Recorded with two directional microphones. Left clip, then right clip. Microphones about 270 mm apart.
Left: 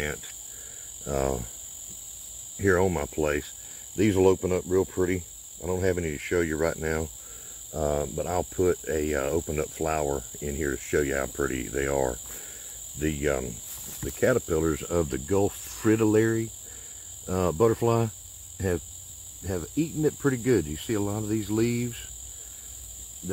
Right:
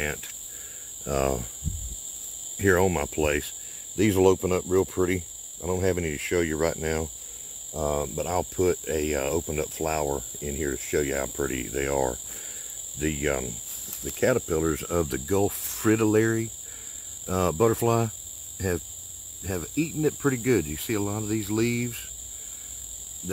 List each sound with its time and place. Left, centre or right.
1.0 s speech: centre
2.6 s speech: centre